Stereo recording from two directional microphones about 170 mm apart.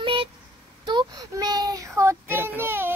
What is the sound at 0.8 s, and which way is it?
Child singing, 25° right (ahead or behind).